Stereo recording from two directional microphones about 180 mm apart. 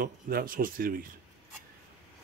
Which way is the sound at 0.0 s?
55° right (ahead or behind).